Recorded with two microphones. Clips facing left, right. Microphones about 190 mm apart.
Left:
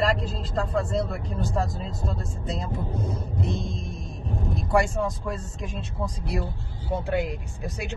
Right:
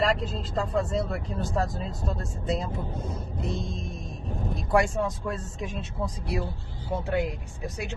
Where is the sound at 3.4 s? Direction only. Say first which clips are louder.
Left 1 dB; centre (ahead or behind).